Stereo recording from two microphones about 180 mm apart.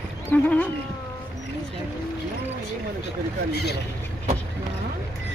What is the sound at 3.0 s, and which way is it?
Speech, 65° left (ahead or behind).